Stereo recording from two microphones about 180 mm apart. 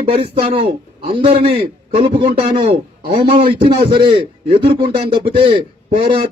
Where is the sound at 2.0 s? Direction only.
25° right (ahead or behind).